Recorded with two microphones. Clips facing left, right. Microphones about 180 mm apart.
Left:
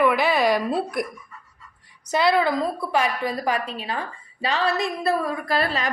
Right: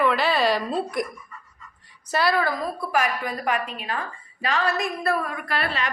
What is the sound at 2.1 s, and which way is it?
A woman's voice, 20° left (ahead or behind).